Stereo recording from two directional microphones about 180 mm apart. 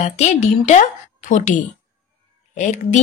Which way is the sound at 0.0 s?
40° left (ahead or behind).